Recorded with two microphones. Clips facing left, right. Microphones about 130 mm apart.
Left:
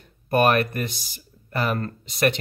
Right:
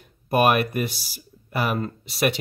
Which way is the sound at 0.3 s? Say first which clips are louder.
Even; 10° right (ahead or behind).